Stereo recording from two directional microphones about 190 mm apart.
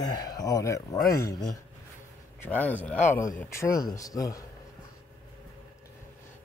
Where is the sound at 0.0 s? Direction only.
20° left (ahead or behind).